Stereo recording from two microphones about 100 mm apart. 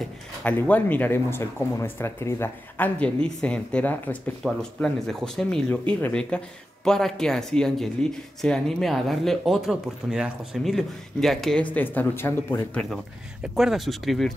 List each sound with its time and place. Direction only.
0.4 s speech: 15° left (ahead or behind)
11.6 s speech: 15° left (ahead or behind)
13.6 s speech: centre (ahead or behind)